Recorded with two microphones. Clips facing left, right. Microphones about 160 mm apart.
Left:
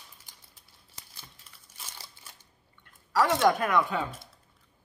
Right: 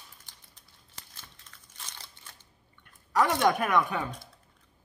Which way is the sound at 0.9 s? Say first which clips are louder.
Even; 10° left (ahead or behind).